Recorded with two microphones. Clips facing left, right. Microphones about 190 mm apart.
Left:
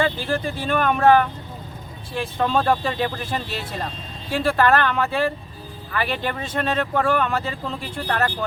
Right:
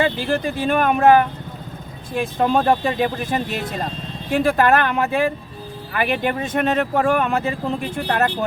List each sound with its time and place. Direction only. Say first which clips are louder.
0.0 s speech: right 3 dB; 15° right (ahead or behind)